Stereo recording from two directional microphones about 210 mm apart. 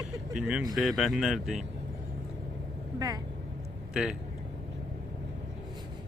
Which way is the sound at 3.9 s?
5° right (ahead or behind).